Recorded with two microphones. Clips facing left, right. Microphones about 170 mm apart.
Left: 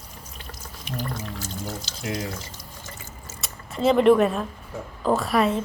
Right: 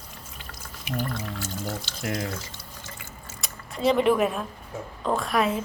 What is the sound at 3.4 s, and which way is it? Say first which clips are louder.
A woman's voice: left 3 dB; centre (ahead or behind).